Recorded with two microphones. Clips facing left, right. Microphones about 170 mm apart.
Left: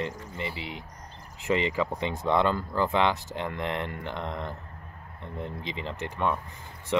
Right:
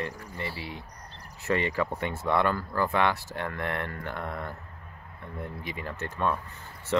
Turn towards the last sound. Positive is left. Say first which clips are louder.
# even
turn(degrees=15)  # may be behind; listen again after turning